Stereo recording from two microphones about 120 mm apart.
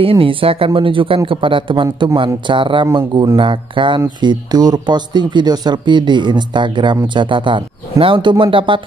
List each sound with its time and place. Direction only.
0.0 s speech: 50° right (ahead or behind)